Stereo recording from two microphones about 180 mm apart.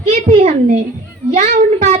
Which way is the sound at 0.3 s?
35° right (ahead or behind).